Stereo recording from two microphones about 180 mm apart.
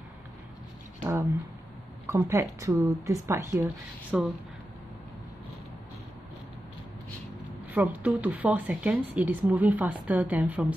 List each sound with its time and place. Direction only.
2.0 s speech: 15° right (ahead or behind)
4.1 s speech: 5° right (ahead or behind)
7.7 s speech: 10° right (ahead or behind)